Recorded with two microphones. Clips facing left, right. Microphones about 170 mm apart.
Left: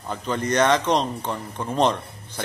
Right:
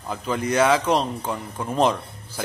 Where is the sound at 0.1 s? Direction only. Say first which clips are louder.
Even; 5° right (ahead or behind).